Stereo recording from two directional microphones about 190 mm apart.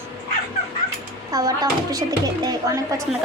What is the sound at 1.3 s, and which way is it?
Speech, 20° right (ahead or behind).